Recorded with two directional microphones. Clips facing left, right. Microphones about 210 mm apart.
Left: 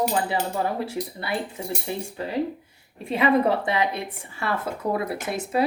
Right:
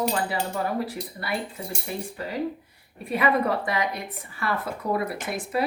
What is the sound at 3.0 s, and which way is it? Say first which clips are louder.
Speech: left 3 dB; 25° left (ahead or behind).